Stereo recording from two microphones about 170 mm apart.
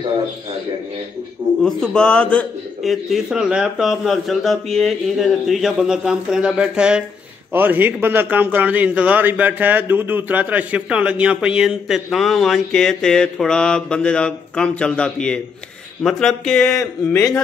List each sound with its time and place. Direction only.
1.6 s a man's voice: 5° left (ahead or behind)
16.8 s a man's voice: 15° left (ahead or behind)